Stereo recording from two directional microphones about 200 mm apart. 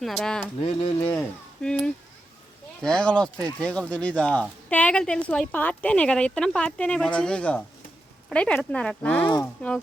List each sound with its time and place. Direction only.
0.0 s speech: centre (ahead or behind)
0.6 s speech: 25° left (ahead or behind)
1.6 s speech: 5° left (ahead or behind)
2.8 s speech: 5° left (ahead or behind)